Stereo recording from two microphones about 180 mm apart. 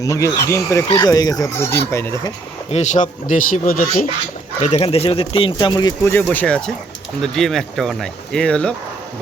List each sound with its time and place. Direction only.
0.0 s speech: 20° left (ahead or behind)
2.6 s speech: 40° left (ahead or behind)
4.7 s speech: 35° left (ahead or behind); by 8.7 s 5° left (ahead or behind)